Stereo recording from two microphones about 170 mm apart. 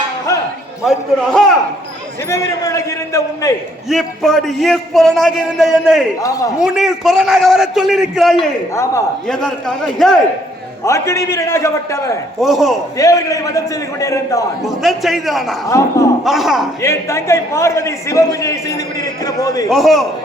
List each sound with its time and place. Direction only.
0.9 s a man's voice: centre (ahead or behind)
2.3 s a man's voice: 15° left (ahead or behind)
3.8 s a man's voice: centre (ahead or behind)
8.7 s a man's voice: 15° left (ahead or behind)
9.2 s a man's voice: 5° left (ahead or behind)
10.8 s a man's voice: 15° left (ahead or behind)
12.4 s a man's voice: centre (ahead or behind)
13.0 s a man's voice: 20° left (ahead or behind)
14.8 s a man's voice: centre (ahead or behind)
15.7 s a man's voice: 15° left (ahead or behind)
16.2 s a man's voice: centre (ahead or behind)
16.8 s a man's voice: 15° left (ahead or behind)
19.7 s a man's voice: centre (ahead or behind)